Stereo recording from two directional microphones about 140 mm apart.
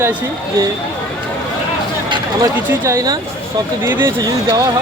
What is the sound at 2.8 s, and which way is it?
Speech, 25° right (ahead or behind).